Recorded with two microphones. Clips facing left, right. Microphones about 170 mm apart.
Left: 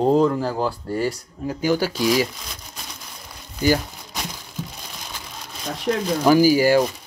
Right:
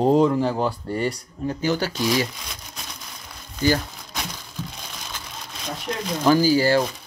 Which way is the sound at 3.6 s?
10° left (ahead or behind).